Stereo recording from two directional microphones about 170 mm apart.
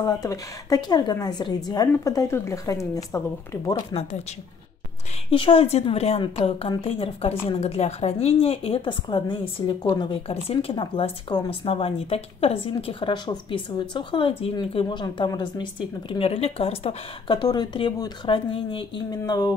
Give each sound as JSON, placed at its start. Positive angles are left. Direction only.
{"t": 0.0, "sound": "a woman's voice", "side_deg": 20}
{"t": 5.3, "sound": "a woman's voice", "side_deg": 30}